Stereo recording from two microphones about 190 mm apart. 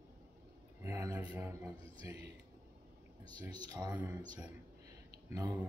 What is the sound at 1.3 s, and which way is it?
Speech, 10° right (ahead or behind).